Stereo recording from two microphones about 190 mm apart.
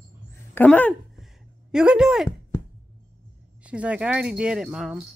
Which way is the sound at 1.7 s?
5° right (ahead or behind).